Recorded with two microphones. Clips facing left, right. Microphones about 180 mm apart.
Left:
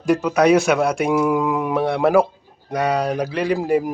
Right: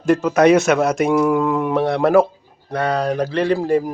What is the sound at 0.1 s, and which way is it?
A man's voice, 5° left (ahead or behind).